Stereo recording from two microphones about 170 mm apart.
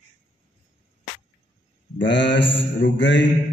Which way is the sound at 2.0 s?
90° left.